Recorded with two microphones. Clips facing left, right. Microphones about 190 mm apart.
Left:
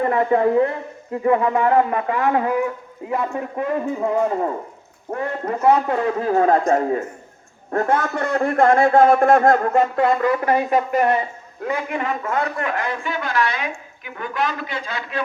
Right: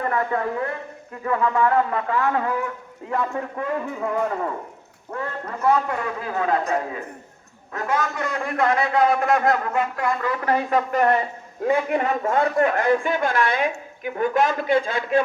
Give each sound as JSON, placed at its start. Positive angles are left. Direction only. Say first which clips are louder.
{"t": 0.0, "sound": "a man's voice", "louder": "left 7 dB", "side_deg": 20}
{"t": 5.1, "sound": "a man's voice", "louder": "left 6 dB", "side_deg": 40}
{"t": 6.2, "sound": "a man's voice", "louder": "left 6 dB", "side_deg": 40}
{"t": 10.4, "sound": "speech", "louder": "left 3 dB", "side_deg": 15}
{"t": 11.7, "sound": "a man's voice", "louder": "right 3 dB", "side_deg": -35}